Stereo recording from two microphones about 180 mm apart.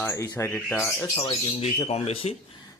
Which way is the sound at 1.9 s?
35° left (ahead or behind).